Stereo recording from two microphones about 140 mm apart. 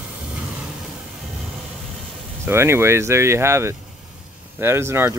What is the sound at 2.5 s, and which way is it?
Speech, 20° right (ahead or behind).